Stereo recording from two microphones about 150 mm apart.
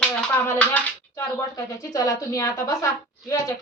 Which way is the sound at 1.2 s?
20° left (ahead or behind).